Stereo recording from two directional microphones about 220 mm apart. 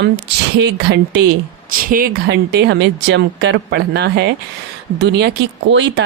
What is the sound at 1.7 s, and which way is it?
Speech, 40° right (ahead or behind).